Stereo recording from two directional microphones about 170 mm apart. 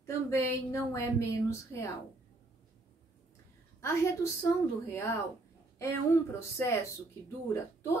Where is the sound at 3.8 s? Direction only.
15° left (ahead or behind).